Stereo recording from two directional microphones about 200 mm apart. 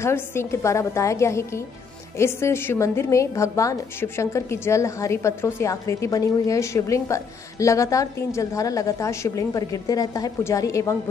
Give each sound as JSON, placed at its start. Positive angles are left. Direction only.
{"t": 0.0, "sound": "a woman's voice", "side_deg": 10}